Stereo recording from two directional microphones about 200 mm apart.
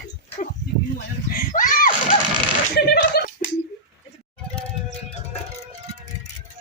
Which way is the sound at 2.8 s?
55° left (ahead or behind).